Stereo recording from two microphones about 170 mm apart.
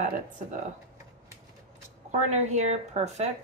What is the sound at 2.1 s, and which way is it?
Speech, 45° right (ahead or behind).